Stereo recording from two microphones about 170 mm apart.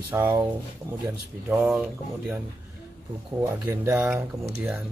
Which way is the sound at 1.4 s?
5° right (ahead or behind).